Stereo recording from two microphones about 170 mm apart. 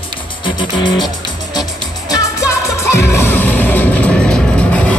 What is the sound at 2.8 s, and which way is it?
Music, 15° left (ahead or behind).